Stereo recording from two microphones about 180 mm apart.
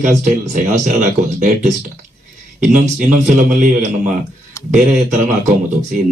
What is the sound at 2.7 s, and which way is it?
A man's voice, 45° right (ahead or behind).